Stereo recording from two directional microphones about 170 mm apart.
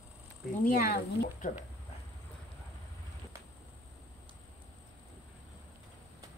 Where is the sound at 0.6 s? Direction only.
55° left (ahead or behind).